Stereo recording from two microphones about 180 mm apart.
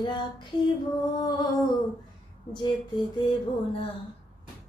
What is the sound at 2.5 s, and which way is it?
A woman's voice, 25° left (ahead or behind).